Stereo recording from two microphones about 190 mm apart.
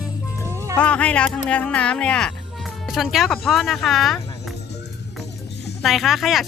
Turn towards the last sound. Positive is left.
turn(degrees=0)  # may be behind; listen again after turning